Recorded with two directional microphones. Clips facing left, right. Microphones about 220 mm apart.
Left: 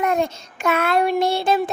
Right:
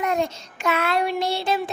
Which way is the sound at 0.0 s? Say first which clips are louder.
Left 3 dB; 50° left (ahead or behind).